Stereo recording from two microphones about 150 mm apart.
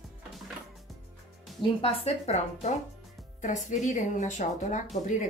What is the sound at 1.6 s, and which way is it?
A woman's voice, 40° left (ahead or behind).